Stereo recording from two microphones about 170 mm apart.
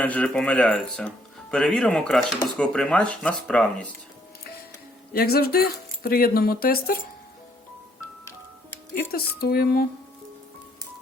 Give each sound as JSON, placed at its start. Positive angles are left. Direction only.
{"t": 0.0, "sound": "speech", "side_deg": 10}
{"t": 5.1, "sound": "speech", "side_deg": 65}
{"t": 9.1, "sound": "speech", "side_deg": 65}